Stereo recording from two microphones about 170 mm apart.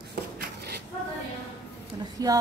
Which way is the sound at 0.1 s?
65° right (ahead or behind).